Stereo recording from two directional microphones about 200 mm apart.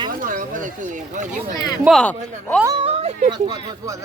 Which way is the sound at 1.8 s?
Centre (ahead or behind).